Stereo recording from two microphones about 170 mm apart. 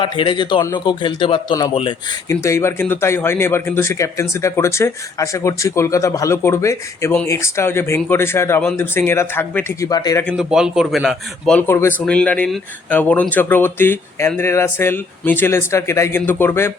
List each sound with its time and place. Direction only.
0.0 s speech: 30° left (ahead or behind)
2.3 s speech: 15° left (ahead or behind)
10.2 s a man's voice: 5° right (ahead or behind)
11.7 s speech: 15° left (ahead or behind)